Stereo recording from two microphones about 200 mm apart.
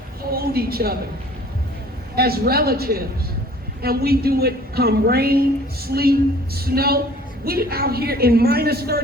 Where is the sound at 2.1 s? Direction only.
50° right (ahead or behind).